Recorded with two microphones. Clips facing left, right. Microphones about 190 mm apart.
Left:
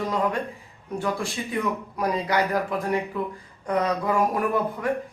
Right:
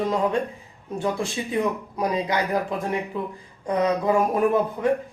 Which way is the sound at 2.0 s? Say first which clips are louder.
Even; 20° right (ahead or behind).